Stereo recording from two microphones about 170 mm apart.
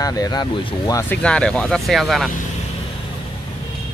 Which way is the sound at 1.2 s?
5° left (ahead or behind).